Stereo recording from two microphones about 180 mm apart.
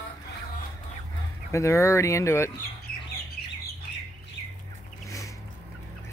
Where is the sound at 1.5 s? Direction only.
15° left (ahead or behind).